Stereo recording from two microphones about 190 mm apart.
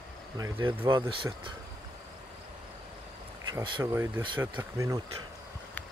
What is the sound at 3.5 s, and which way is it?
Speech, 25° right (ahead or behind).